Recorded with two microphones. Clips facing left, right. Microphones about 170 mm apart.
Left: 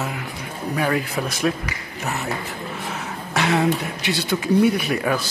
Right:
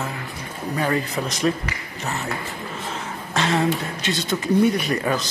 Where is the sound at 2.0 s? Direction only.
15° left (ahead or behind).